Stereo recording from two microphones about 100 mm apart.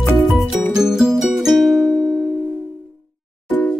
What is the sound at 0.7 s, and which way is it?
Music, 5° right (ahead or behind).